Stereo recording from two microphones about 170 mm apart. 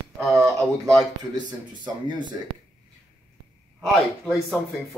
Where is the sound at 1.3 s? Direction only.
25° right (ahead or behind).